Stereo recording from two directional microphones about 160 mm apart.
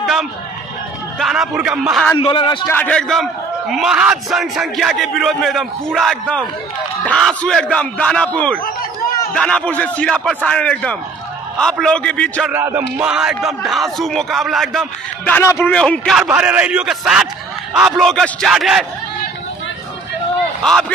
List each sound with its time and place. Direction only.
0.0 s a sound: centre (ahead or behind)
1.2 s speech: centre (ahead or behind)
2.1 s a man's voice: 30° left (ahead or behind)
2.8 s speech: 5° left (ahead or behind)
12.4 s speech: 15° right (ahead or behind); by 16.3 s 5° left (ahead or behind)
16.3 s a man's voice: 10° right (ahead or behind)